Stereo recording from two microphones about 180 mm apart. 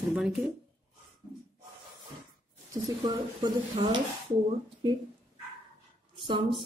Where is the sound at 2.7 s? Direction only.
20° right (ahead or behind).